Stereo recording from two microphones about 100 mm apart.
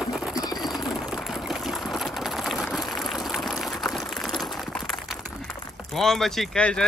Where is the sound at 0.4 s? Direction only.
45° left (ahead or behind).